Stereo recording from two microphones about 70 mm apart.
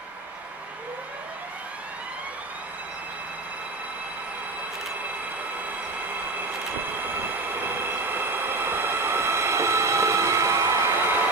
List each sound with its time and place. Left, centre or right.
7.0 s train: right